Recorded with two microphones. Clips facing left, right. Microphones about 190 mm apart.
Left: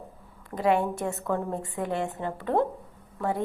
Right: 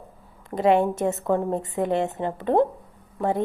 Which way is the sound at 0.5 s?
25° right (ahead or behind).